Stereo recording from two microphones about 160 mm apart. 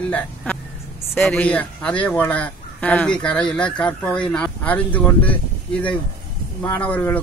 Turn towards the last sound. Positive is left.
turn(degrees=10)  # may be behind; listen again after turning